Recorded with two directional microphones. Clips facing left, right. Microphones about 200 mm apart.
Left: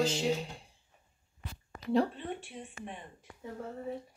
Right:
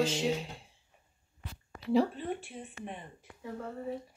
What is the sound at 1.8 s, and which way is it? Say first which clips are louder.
Speech: right 1 dB; centre (ahead or behind).